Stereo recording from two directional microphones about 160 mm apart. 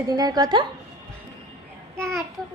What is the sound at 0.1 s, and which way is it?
Music, 25° right (ahead or behind).